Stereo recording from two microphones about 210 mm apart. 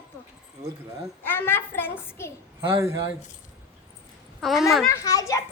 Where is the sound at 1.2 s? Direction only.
10° left (ahead or behind).